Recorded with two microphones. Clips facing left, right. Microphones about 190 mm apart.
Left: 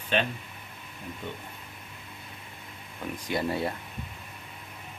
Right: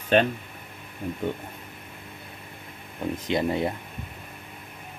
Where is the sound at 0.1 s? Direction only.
45° right (ahead or behind).